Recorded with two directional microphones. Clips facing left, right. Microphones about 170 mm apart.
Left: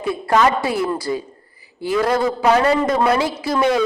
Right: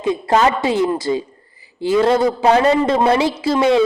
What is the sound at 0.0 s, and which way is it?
A woman's voice, 20° right (ahead or behind).